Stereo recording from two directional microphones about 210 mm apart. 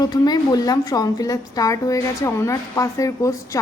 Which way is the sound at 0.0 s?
20° left (ahead or behind).